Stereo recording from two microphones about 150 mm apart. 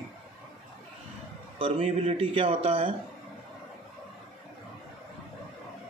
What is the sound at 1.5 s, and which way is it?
Speech, 35° right (ahead or behind).